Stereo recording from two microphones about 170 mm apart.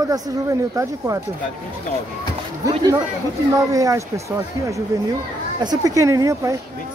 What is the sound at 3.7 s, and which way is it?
Speech, 20° right (ahead or behind).